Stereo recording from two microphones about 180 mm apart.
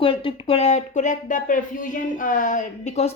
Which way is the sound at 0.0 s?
30° left (ahead or behind).